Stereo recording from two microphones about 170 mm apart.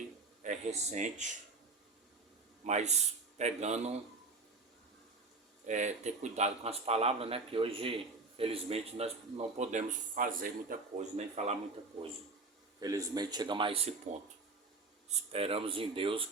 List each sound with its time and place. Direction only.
0.4 s speech: 40° right (ahead or behind)
2.6 s speech: 40° right (ahead or behind)
5.6 s speech: 45° right (ahead or behind)
9.6 s speech: 50° right (ahead or behind)
12.8 s speech: 20° right (ahead or behind); by 14.2 s 35° right (ahead or behind)
15.3 s speech: 35° right (ahead or behind)